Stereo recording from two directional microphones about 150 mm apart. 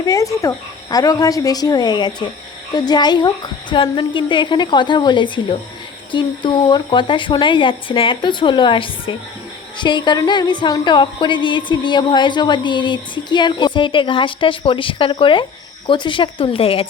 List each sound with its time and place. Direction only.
0.0 s a woman's voice: 20° left (ahead or behind); by 16.8 s 40° left (ahead or behind)